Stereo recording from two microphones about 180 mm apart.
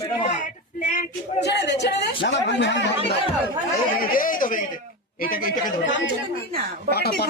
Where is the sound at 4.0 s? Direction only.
50° left (ahead or behind).